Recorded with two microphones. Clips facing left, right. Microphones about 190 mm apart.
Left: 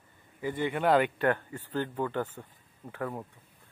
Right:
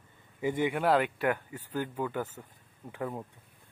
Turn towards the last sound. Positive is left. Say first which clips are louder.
# even
turn(degrees=-15)  # may be behind; listen again after turning